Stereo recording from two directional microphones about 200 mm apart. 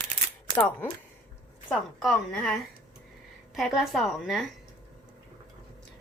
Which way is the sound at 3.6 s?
Centre (ahead or behind).